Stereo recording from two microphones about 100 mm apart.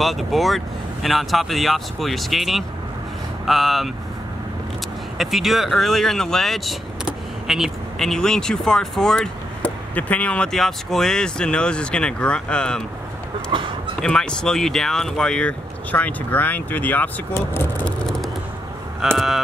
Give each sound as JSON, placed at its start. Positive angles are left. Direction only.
{"t": 0.0, "sound": "speech", "side_deg": 0}
{"t": 5.1, "sound": "speech", "side_deg": 0}
{"t": 13.5, "sound": "speech", "side_deg": -60}
{"t": 14.0, "sound": "speech", "side_deg": 10}
{"t": 19.1, "sound": "speech", "side_deg": 0}